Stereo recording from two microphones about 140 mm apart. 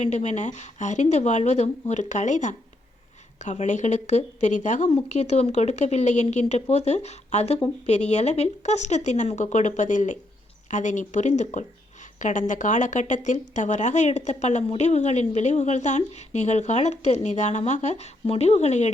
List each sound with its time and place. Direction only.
0.0 s speech: 55° left (ahead or behind)